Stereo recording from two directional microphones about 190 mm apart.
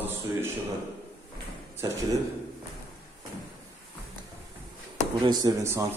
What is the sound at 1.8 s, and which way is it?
Speech, 20° right (ahead or behind).